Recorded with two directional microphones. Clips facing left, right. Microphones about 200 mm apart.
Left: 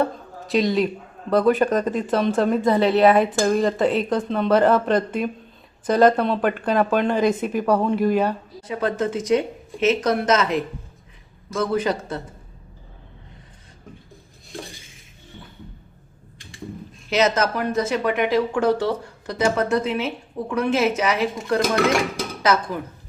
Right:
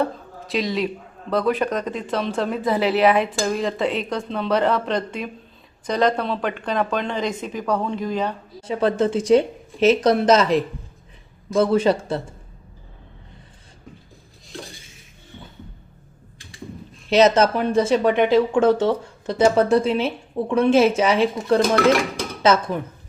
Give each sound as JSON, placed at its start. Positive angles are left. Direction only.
{"t": 0.0, "sound": "a sound", "side_deg": 0}
{"t": 1.3, "sound": "speech", "side_deg": 0}
{"t": 8.6, "sound": "speech", "side_deg": -30}
{"t": 17.1, "sound": "speech", "side_deg": -30}